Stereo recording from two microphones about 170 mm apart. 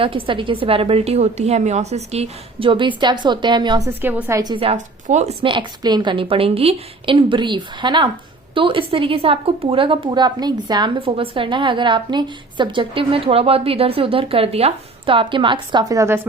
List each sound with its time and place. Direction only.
0.0 s speech: 30° right (ahead or behind)
3.8 s a woman's voice: 10° right (ahead or behind)
4.5 s speech: 35° right (ahead or behind); by 16.2 s 15° right (ahead or behind)